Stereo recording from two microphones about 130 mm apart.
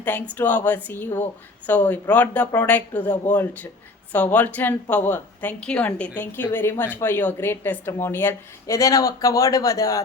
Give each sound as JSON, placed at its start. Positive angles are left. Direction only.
{"t": 0.0, "sound": "a woman's voice", "side_deg": 15}